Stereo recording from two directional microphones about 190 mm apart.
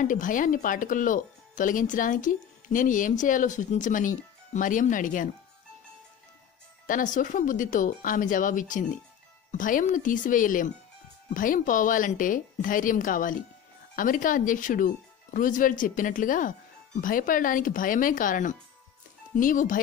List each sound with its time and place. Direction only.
0.0 s speech: 45° left (ahead or behind)
6.9 s speech: 45° left (ahead or behind)